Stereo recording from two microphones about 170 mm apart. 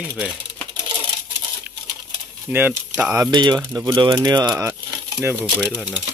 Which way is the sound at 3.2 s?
25° right (ahead or behind).